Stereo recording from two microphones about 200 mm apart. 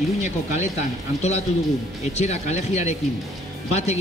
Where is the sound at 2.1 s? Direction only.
35° left (ahead or behind).